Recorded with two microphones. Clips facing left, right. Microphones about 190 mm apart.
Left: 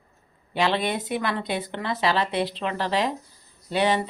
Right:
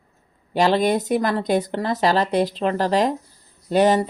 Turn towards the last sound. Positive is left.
turn(degrees=-45)  # may be behind; listen again after turning